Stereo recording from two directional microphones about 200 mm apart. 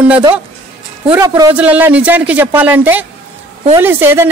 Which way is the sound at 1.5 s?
10° right (ahead or behind).